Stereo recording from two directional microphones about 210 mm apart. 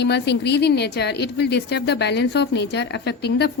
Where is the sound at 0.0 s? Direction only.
55° left (ahead or behind).